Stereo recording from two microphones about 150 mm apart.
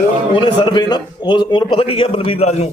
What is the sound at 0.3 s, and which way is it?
A man's voice, 30° left (ahead or behind).